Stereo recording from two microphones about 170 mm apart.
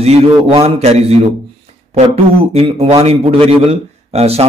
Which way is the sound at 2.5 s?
35° right (ahead or behind).